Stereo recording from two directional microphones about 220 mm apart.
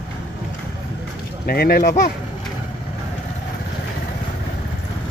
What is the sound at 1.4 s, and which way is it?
Speech, 45° left (ahead or behind).